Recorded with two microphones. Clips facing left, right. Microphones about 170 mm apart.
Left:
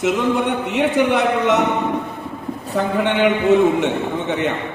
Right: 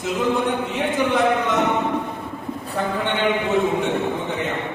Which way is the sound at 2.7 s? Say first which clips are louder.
Left 5 dB; 70° left (ahead or behind).